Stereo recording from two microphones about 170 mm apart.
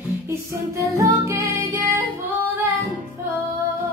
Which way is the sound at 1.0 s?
15° right (ahead or behind).